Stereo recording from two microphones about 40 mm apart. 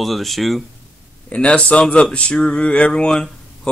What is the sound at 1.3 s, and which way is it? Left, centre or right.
Speech, left.